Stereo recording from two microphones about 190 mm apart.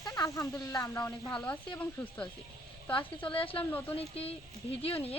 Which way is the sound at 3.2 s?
30° left (ahead or behind).